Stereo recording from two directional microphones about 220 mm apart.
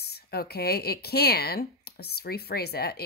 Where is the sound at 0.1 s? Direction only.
45° left (ahead or behind).